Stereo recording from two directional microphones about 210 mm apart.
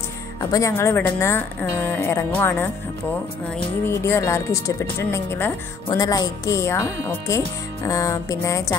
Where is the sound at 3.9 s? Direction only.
15° left (ahead or behind).